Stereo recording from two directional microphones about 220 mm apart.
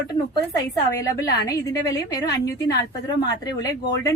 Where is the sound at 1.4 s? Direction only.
15° left (ahead or behind).